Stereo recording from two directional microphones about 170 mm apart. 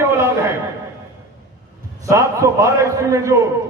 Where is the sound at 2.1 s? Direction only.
20° right (ahead or behind).